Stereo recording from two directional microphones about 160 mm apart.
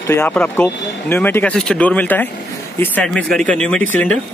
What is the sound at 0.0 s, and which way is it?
Speech, 15° left (ahead or behind).